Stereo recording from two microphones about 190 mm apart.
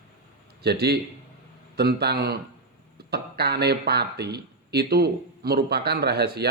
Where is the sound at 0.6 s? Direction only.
55° right (ahead or behind).